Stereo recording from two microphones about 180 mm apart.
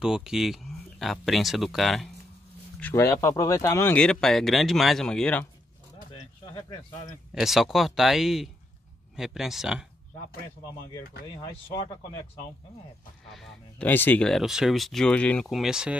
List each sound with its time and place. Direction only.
0.0 s speech: 5° right (ahead or behind)
2.8 s speech: 15° left (ahead or behind)
6.5 s speech: 20° left (ahead or behind)
7.3 s speech: centre (ahead or behind)
11.2 s speech: 20° left (ahead or behind)
13.3 s speech: 5° left (ahead or behind)